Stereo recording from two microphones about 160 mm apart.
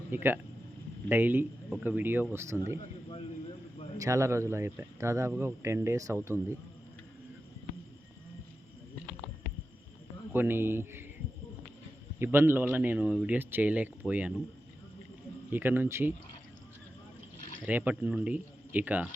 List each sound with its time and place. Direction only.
0.1 s speech: 15° right (ahead or behind)
4.0 s speech: 20° right (ahead or behind)
10.3 s speech: 15° right (ahead or behind)
12.2 s speech: 15° right (ahead or behind)
15.5 s speech: 10° right (ahead or behind)
17.7 s speech: 10° right (ahead or behind)